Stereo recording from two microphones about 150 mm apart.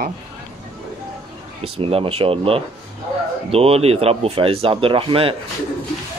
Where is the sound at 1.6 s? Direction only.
40° right (ahead or behind).